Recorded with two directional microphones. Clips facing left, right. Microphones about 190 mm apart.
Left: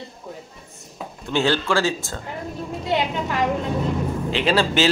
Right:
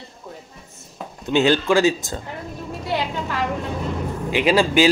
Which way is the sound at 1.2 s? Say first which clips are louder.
Right 4 dB; 15° right (ahead or behind).